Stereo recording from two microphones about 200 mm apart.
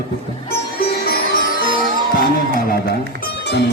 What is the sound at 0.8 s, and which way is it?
Music, 50° left (ahead or behind).